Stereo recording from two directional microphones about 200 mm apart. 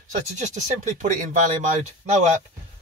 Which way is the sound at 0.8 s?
40° right (ahead or behind).